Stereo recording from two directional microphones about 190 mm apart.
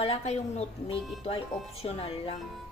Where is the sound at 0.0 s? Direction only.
30° left (ahead or behind).